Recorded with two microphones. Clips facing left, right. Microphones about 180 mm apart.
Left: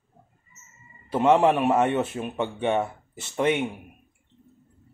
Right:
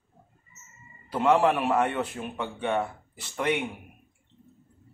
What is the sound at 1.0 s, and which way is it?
A man's voice, 25° left (ahead or behind).